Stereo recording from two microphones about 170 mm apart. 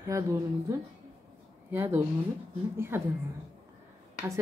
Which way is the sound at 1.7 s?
15° right (ahead or behind).